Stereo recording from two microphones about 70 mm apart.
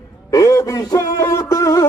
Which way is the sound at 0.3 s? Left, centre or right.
Left.